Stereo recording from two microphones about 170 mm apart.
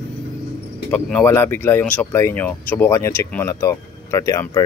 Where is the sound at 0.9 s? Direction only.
10° left (ahead or behind).